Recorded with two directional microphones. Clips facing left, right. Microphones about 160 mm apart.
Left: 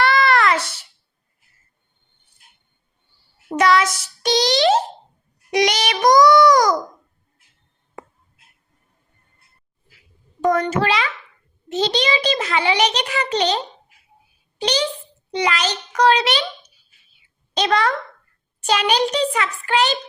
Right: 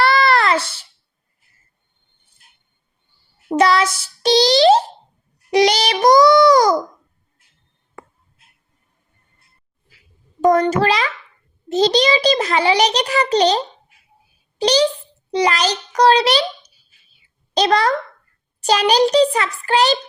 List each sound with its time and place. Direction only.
0.0 s a sound: 35° right (ahead or behind)
3.5 s child singing: 30° right (ahead or behind)
5.5 s a child's voice: 30° right (ahead or behind)
10.4 s a child's voice: 35° right (ahead or behind)
14.6 s a child's voice: 35° right (ahead or behind)